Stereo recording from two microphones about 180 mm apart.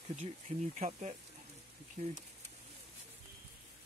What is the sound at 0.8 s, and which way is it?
Speech, 40° right (ahead or behind).